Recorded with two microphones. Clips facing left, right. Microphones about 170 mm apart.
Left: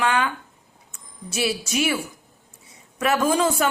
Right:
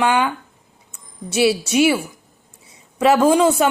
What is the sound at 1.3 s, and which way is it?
Speech, 25° right (ahead or behind).